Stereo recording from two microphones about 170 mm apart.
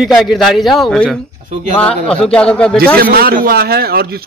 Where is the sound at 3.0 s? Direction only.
60° right (ahead or behind).